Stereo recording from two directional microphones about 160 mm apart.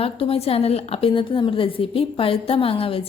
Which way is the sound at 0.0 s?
35° left (ahead or behind).